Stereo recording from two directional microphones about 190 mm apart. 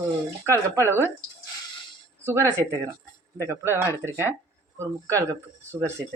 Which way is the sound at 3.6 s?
15° right (ahead or behind).